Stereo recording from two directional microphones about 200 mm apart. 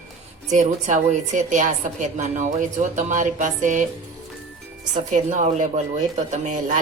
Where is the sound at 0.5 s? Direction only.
40° right (ahead or behind).